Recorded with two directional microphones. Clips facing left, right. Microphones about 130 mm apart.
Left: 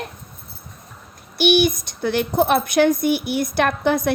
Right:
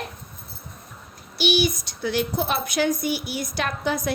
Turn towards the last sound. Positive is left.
turn(degrees=55)  # may be behind; listen again after turning